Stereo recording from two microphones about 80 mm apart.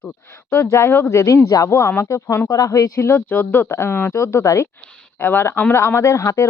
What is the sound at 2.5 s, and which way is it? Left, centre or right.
Speech, left.